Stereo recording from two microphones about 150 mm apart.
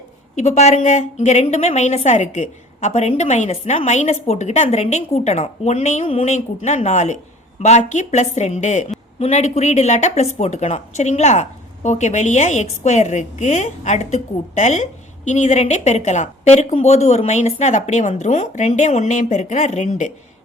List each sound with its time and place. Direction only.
0.3 s speech: 50° left (ahead or behind)